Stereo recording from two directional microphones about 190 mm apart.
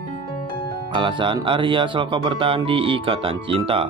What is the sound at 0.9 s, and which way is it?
Speech, 25° right (ahead or behind).